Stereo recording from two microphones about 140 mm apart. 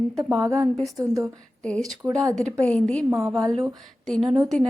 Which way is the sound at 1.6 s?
5° left (ahead or behind).